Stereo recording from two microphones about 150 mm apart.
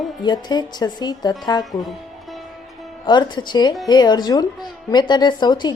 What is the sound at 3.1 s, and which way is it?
Music, 30° left (ahead or behind).